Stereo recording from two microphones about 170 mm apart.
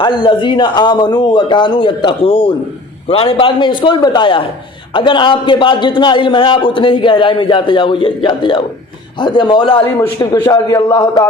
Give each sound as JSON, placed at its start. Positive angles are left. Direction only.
{"t": 0.0, "sound": "a man's voice", "side_deg": 30}